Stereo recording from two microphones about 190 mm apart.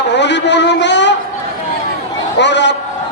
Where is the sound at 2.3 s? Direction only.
65° left (ahead or behind).